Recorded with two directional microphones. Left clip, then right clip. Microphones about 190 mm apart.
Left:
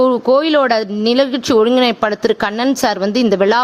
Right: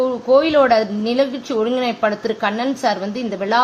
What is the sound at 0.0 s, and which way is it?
Speech, 60° left (ahead or behind).